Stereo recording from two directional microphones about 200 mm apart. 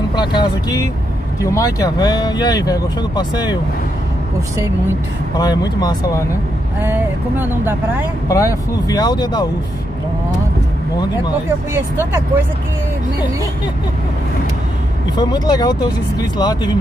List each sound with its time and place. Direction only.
0.1 s speech: 20° left (ahead or behind)
5.4 s speech: 20° left (ahead or behind)
6.8 s speech: 10° right (ahead or behind)
8.3 s speech: 15° left (ahead or behind)
11.7 s speech: 10° right (ahead or behind)
15.1 s speech: 20° left (ahead or behind)